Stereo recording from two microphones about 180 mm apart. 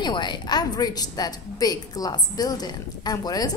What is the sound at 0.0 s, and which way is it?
A woman's voice, 25° left (ahead or behind).